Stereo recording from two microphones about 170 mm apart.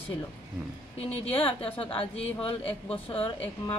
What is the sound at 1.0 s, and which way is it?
Speech, 35° left (ahead or behind).